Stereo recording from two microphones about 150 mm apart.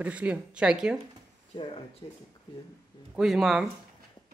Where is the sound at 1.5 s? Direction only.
35° left (ahead or behind).